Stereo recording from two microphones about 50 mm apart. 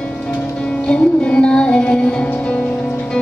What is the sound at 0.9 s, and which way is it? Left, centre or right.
Music, centre.